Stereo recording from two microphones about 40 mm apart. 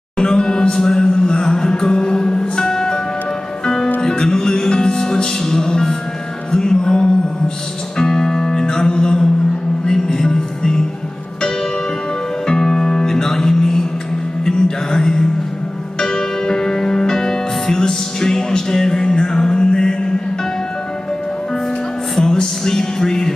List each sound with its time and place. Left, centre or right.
0.2 s music: centre
12.4 s music: centre
22.2 s music: centre